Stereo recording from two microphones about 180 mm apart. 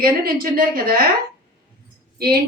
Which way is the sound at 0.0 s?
55° right (ahead or behind).